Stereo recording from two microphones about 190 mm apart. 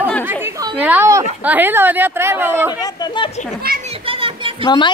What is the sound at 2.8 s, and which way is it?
Speech, 20° left (ahead or behind).